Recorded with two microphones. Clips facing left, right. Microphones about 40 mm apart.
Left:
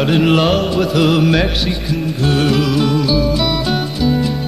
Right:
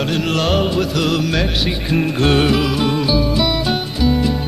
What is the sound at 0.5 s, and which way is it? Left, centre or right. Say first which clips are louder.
Music: left 2 dB; centre.